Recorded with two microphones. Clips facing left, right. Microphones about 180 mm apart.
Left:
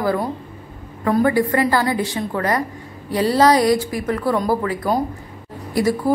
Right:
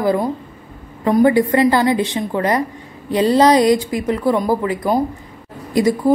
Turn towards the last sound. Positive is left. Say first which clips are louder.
# right 3 dB
turn(degrees=-20)  # may be behind; listen again after turning